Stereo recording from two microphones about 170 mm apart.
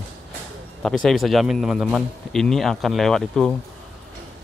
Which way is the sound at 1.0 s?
Centre (ahead or behind).